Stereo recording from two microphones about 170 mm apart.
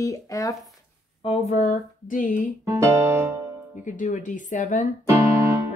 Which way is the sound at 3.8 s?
50° left (ahead or behind).